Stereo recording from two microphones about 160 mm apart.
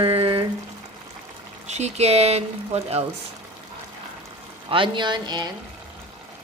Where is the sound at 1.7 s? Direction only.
45° right (ahead or behind).